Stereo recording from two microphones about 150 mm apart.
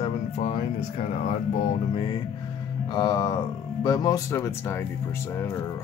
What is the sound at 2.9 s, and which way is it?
Speech, 30° left (ahead or behind).